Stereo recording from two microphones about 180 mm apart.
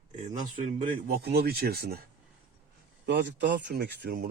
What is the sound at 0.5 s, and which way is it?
Speech, 45° right (ahead or behind).